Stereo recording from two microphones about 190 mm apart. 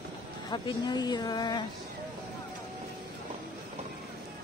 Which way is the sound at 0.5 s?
25° left (ahead or behind).